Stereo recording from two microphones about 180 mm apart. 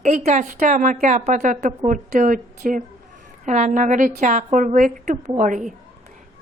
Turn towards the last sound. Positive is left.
turn(degrees=-45)  # may be behind; listen again after turning